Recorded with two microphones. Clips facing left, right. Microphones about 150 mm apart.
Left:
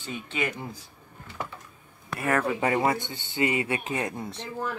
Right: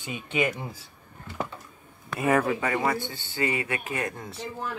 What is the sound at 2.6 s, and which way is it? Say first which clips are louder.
Speech: left 2 dB; 25° left (ahead or behind).